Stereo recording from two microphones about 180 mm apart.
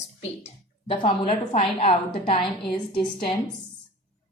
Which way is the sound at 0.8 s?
30° left (ahead or behind).